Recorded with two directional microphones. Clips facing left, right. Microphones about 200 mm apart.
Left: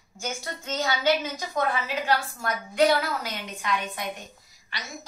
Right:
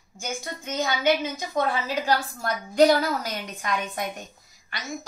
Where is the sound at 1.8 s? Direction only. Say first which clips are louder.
Right 2 dB; 35° right (ahead or behind).